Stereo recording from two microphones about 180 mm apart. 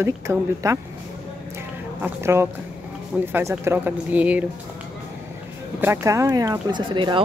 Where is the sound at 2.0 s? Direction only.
15° right (ahead or behind).